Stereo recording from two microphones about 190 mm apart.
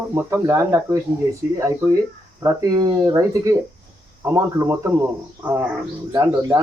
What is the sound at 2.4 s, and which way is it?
Speech, 20° right (ahead or behind).